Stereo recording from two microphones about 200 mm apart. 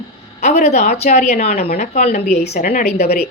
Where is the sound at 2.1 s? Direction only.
50° left (ahead or behind).